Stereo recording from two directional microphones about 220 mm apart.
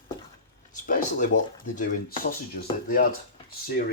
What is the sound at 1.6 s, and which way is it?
Speech, 35° left (ahead or behind).